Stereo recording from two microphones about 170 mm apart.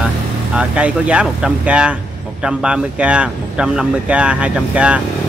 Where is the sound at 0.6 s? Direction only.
5° right (ahead or behind).